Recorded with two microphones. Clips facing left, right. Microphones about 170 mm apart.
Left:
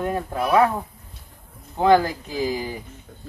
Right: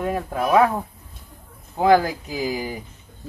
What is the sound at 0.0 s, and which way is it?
Speech, 10° right (ahead or behind).